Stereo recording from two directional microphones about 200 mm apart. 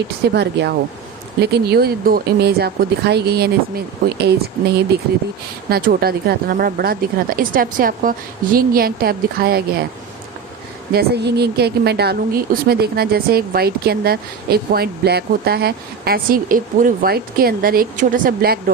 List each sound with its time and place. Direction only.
0.3 s speech: 60° right (ahead or behind)
10.9 s speech: 55° right (ahead or behind)